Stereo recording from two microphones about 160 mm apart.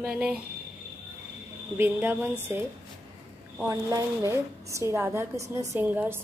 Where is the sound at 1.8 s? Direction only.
15° right (ahead or behind).